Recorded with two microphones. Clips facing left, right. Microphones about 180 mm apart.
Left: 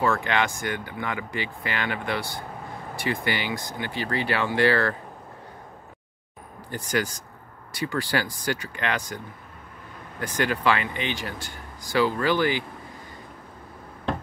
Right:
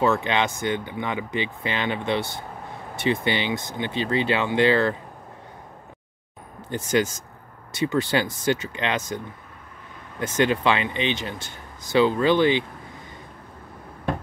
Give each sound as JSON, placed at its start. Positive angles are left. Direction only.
{"t": 0.0, "sound": "speech", "side_deg": -20}
{"t": 6.7, "sound": "speech", "side_deg": -20}
{"t": 10.2, "sound": "speech", "side_deg": -20}